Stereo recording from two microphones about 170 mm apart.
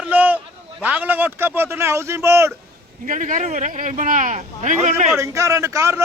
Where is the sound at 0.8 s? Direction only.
10° right (ahead or behind).